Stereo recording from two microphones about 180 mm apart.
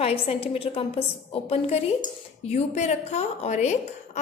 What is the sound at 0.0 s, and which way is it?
A woman's voice, 30° left (ahead or behind).